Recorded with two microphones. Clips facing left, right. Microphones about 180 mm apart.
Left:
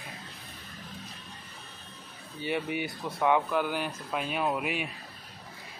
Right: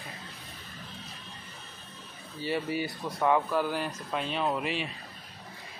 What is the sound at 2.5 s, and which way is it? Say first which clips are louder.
Speech: even; 15° left (ahead or behind).